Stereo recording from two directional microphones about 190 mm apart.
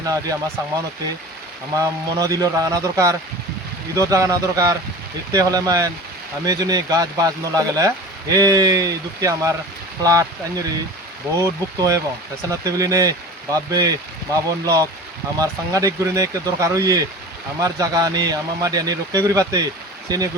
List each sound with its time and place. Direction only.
0.0 s speech: 20° right (ahead or behind)
1.7 s speech: 20° right (ahead or behind)
11.3 s speech: 15° right (ahead or behind)